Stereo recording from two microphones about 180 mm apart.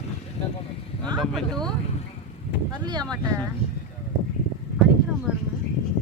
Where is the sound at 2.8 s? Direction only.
25° right (ahead or behind).